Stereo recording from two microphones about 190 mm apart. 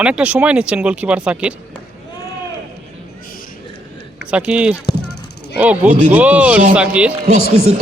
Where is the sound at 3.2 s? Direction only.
50° left (ahead or behind).